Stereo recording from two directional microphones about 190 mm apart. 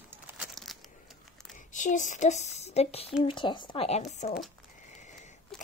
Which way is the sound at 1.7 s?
40° left (ahead or behind).